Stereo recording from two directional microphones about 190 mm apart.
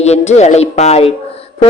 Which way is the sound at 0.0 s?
35° left (ahead or behind).